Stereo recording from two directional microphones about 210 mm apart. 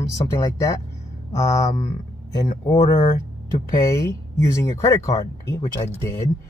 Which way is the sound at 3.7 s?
15° left (ahead or behind).